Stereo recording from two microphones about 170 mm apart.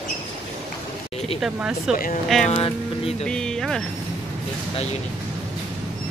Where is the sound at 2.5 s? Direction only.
35° left (ahead or behind).